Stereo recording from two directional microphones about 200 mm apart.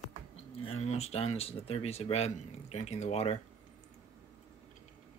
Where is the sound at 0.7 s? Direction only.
30° left (ahead or behind).